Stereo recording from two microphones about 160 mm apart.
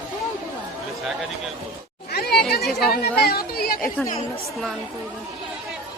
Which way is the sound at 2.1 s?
80° left.